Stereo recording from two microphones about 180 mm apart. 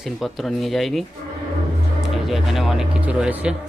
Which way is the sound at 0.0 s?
Centre (ahead or behind).